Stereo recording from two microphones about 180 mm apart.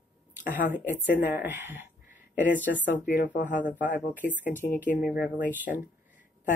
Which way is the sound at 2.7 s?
60° left (ahead or behind).